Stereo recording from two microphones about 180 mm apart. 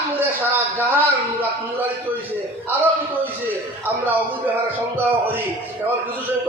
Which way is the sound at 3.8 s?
10° right (ahead or behind).